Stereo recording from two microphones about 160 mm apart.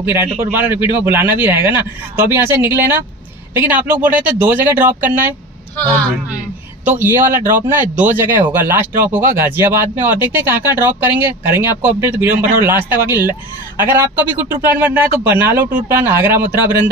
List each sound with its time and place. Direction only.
0.0 s speech: 15° right (ahead or behind)
7.0 s speech: 15° right (ahead or behind)